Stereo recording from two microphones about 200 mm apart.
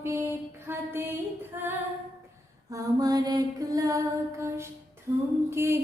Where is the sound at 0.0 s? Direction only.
15° right (ahead or behind).